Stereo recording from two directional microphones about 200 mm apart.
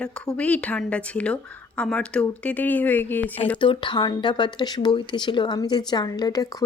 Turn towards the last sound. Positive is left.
turn(degrees=20)  # may be behind; listen again after turning